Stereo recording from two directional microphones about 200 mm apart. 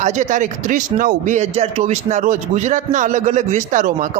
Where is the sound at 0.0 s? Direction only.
35° right (ahead or behind).